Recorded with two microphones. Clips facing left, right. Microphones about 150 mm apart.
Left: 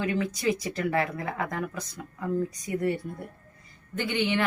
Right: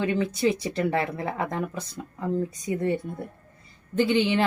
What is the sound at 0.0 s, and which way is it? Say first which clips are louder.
A woman's voice: right 3 dB; 30° right (ahead or behind).